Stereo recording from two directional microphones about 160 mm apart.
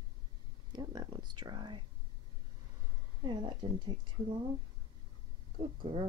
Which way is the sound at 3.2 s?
30° right (ahead or behind).